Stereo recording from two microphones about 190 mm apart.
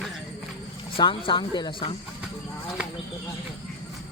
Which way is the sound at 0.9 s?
25° left (ahead or behind).